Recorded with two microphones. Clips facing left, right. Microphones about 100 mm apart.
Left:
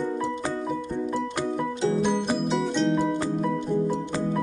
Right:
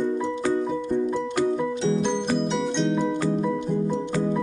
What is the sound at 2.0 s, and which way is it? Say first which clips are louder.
Music: even; 5° left (ahead or behind).